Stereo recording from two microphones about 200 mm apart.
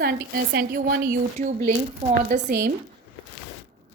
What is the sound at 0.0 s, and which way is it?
A woman's voice, 50° right (ahead or behind).